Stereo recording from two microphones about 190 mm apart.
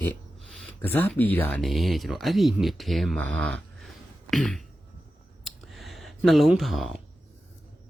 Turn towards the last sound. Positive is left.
turn(degrees=0)  # may be behind; listen again after turning